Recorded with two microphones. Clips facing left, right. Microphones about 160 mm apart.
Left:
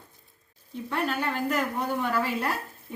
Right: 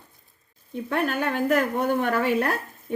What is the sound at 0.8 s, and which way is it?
A woman's voice, 55° right (ahead or behind).